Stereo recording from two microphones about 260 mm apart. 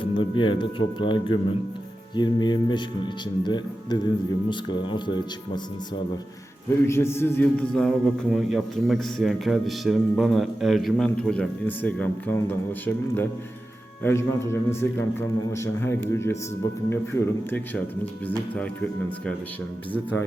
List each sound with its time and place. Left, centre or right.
0.0 s a man's voice: centre
6.8 s a man's voice: centre
19.9 s a man's voice: centre